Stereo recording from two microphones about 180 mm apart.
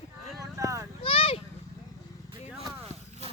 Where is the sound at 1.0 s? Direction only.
30° left (ahead or behind).